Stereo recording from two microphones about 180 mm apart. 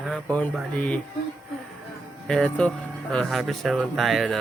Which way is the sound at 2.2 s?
5° left (ahead or behind).